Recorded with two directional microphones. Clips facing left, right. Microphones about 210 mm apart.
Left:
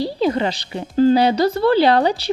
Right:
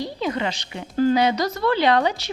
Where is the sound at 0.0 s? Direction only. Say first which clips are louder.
Left 6 dB; 35° left (ahead or behind).